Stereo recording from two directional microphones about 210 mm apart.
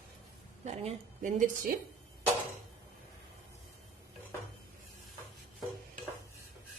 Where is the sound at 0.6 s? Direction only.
30° right (ahead or behind).